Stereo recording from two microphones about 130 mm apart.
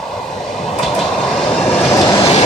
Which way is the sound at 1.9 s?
25° left (ahead or behind).